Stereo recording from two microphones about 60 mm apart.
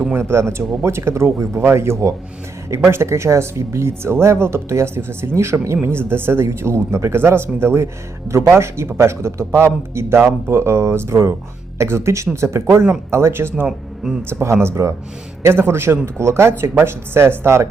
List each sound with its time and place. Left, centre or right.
0.1 s speech: right
13.7 s speech: centre
14.2 s a man's voice: right
14.4 s speech: right